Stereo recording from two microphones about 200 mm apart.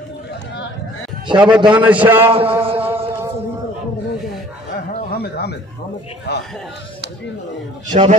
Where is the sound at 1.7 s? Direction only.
5° right (ahead or behind).